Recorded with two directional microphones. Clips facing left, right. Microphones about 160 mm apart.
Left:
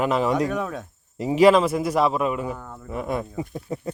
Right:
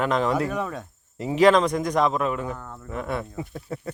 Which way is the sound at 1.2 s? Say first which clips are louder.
Left 2 dB; 10° left (ahead or behind).